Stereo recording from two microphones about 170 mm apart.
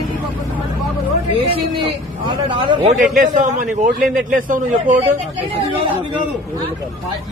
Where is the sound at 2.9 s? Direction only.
50° right (ahead or behind).